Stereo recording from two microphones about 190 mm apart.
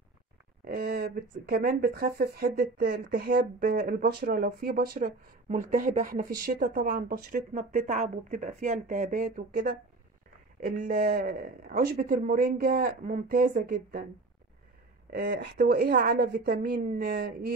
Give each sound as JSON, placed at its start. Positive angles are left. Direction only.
{"t": 0.7, "sound": "speech", "side_deg": -55}
{"t": 5.5, "sound": "speech", "side_deg": -40}
{"t": 15.1, "sound": "speech", "side_deg": -60}